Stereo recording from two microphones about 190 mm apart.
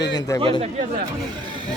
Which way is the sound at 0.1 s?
15° left (ahead or behind).